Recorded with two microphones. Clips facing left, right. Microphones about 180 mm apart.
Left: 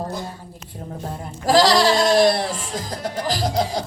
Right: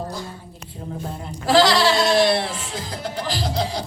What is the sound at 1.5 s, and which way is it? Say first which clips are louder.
Music: left 1 dB; 40° left (ahead or behind).